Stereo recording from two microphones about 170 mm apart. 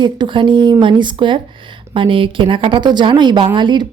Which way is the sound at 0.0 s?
25° right (ahead or behind).